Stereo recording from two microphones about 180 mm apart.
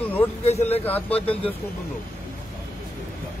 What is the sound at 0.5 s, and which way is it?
Speech, 35° left (ahead or behind).